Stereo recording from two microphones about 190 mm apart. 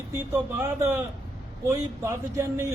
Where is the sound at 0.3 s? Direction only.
10° right (ahead or behind).